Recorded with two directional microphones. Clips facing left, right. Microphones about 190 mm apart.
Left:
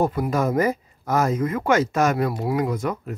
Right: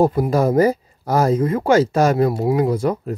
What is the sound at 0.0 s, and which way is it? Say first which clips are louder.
Speech: right 5 dB; 35° right (ahead or behind).